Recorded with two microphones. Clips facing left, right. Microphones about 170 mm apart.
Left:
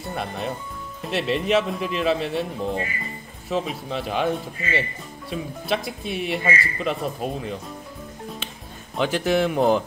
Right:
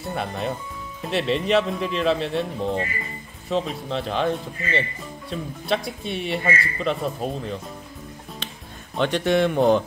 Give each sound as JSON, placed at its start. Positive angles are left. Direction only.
{"t": 0.0, "sound": "speech", "side_deg": 0}
{"t": 8.9, "sound": "speech", "side_deg": 5}